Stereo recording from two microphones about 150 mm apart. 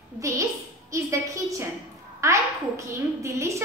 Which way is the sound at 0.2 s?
20° right (ahead or behind).